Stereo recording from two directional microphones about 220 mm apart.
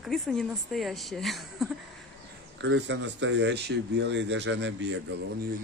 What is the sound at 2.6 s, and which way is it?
Speech, 55° right (ahead or behind).